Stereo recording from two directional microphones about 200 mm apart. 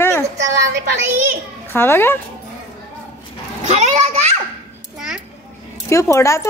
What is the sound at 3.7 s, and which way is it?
Speech, 35° right (ahead or behind).